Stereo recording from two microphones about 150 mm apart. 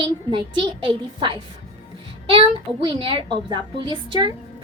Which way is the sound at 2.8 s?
35° right (ahead or behind).